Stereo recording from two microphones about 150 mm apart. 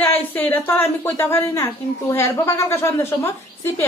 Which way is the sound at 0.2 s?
10° left (ahead or behind).